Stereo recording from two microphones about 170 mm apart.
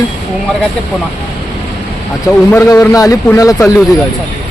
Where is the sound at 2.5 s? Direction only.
15° left (ahead or behind).